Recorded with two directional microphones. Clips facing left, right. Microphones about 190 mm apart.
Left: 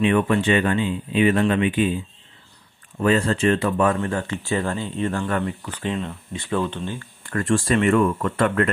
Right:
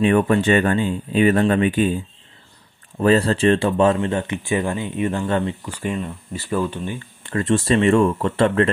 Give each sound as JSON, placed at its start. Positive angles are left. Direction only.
{"t": 0.0, "sound": "speech", "side_deg": -40}
{"t": 3.0, "sound": "speech", "side_deg": -35}